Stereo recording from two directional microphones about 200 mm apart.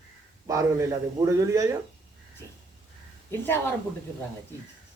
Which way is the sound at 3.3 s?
10° left (ahead or behind).